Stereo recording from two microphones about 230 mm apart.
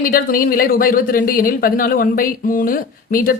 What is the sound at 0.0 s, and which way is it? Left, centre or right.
Speech, left.